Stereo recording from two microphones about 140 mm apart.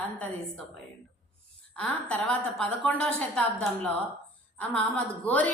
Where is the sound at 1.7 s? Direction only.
10° left (ahead or behind).